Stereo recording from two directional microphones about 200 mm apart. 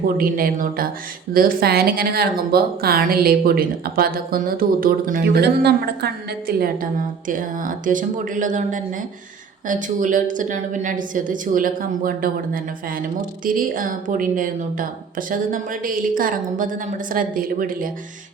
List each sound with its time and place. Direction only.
0.2 s a woman's voice: 45° right (ahead or behind)
7.3 s a woman's voice: 40° right (ahead or behind)